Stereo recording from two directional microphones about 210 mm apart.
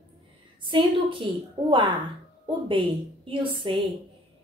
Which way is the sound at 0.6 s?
25° right (ahead or behind).